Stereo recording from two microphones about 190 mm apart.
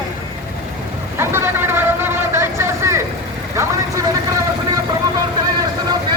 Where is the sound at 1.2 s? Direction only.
15° right (ahead or behind).